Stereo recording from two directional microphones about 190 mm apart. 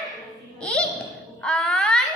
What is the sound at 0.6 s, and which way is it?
Babbling, 5° left (ahead or behind).